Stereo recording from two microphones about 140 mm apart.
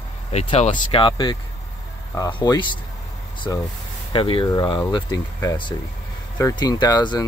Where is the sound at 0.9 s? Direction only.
35° left (ahead or behind).